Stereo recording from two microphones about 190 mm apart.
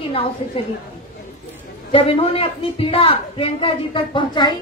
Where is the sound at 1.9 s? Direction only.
30° left (ahead or behind).